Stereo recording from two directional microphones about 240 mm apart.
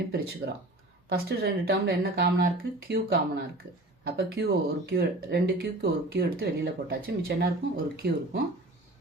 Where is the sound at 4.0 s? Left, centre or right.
Right.